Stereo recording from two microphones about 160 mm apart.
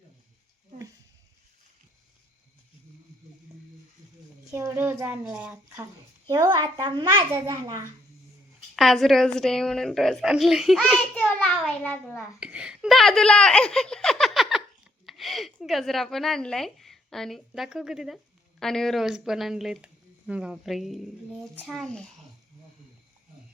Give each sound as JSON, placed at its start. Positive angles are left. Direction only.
{"t": 4.5, "sound": "a child's voice", "side_deg": -15}
{"t": 8.7, "sound": "speech", "side_deg": 0}
{"t": 11.8, "sound": "a child's voice", "side_deg": 10}
{"t": 12.4, "sound": "a woman's voice", "side_deg": -5}